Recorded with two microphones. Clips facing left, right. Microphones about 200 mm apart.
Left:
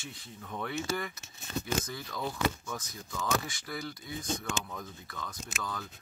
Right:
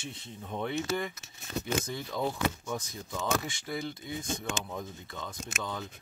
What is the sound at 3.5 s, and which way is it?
Speech, 25° right (ahead or behind).